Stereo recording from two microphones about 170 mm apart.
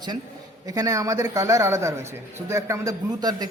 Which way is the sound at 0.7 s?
20° right (ahead or behind).